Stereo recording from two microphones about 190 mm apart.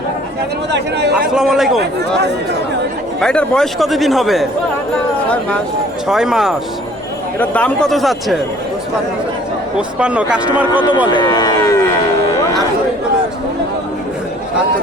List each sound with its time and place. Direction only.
0.7 s speech: 60° right (ahead or behind)
1.3 s speech: centre (ahead or behind)
1.8 s speech: 60° right (ahead or behind)
3.2 s speech: 5° left (ahead or behind)
6.1 s speech: centre (ahead or behind)
9.7 s speech: 5° right (ahead or behind)
11.1 s a sound: 20° left (ahead or behind)